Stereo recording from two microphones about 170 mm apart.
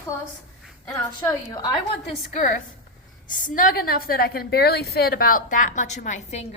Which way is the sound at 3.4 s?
55° left (ahead or behind).